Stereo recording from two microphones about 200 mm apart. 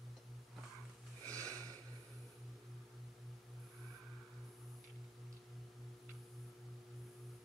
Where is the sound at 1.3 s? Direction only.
15° right (ahead or behind).